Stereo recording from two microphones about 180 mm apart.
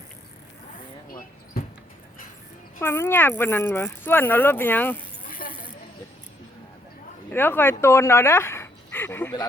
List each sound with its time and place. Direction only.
2.8 s speech: 15° left (ahead or behind)
5.3 s a sound: 50° left (ahead or behind)
7.3 s speech: 10° left (ahead or behind)